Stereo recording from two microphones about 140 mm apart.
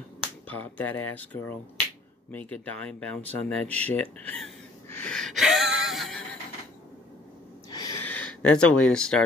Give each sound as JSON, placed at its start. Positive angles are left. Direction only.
{"t": 0.5, "sound": "speech", "side_deg": 10}
{"t": 7.7, "sound": "a sound", "side_deg": 25}
{"t": 8.0, "sound": "speech", "side_deg": 10}